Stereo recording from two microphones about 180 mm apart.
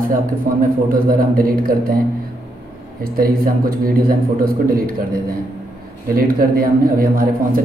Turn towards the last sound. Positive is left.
turn(degrees=-55)  # may be behind; listen again after turning